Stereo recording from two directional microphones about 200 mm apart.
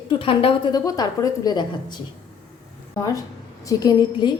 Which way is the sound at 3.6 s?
15° left (ahead or behind).